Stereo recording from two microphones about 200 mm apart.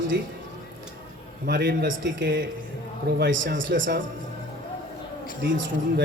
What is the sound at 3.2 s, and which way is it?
Speech, 70° right (ahead or behind).